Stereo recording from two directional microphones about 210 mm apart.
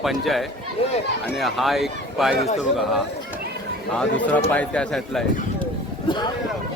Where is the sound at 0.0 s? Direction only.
Centre (ahead or behind).